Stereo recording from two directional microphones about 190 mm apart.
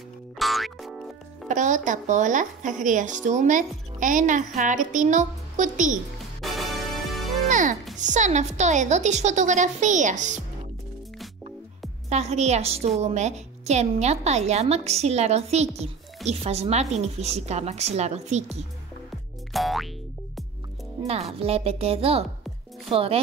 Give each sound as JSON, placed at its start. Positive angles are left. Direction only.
{"t": 0.4, "sound": "music", "side_deg": 0}
{"t": 1.5, "sound": "speech", "side_deg": -40}
{"t": 6.1, "sound": "music", "side_deg": 0}
{"t": 7.4, "sound": "music", "side_deg": -40}
{"t": 8.0, "sound": "speech", "side_deg": -40}
{"t": 12.1, "sound": "speech", "side_deg": -35}
{"t": 19.5, "sound": "boing", "side_deg": 0}
{"t": 21.1, "sound": "speech", "side_deg": -35}